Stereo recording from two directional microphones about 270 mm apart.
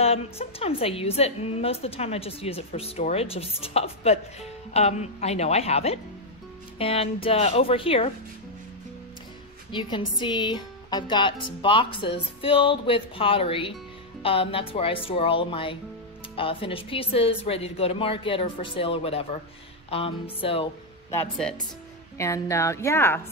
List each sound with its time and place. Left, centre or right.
0.0 s a woman's voice: left
9.7 s a woman's voice: centre
21.1 s speech: centre